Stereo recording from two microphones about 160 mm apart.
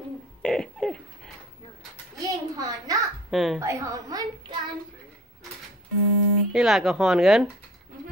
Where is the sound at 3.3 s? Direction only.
Centre (ahead or behind).